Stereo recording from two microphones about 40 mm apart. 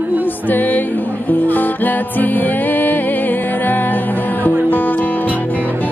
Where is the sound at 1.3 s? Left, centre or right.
Left.